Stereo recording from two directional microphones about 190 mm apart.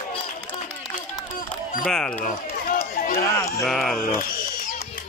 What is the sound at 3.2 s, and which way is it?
Speech, 15° left (ahead or behind).